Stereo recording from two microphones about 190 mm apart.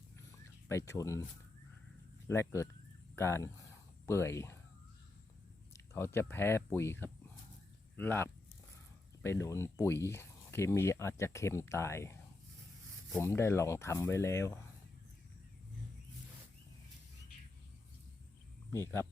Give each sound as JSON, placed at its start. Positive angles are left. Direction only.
{"t": 0.3, "sound": "fowl", "side_deg": 15}
{"t": 2.2, "sound": "speech", "side_deg": 15}
{"t": 3.2, "sound": "a sound", "side_deg": 15}
{"t": 5.7, "sound": "speech", "side_deg": 15}
{"t": 13.1, "sound": "speech", "side_deg": 15}
{"t": 18.7, "sound": "speech", "side_deg": 15}